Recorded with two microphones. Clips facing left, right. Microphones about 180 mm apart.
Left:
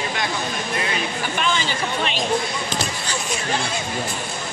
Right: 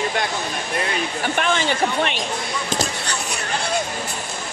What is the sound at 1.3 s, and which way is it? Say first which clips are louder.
Speech: right 4 dB; 60° right (ahead or behind).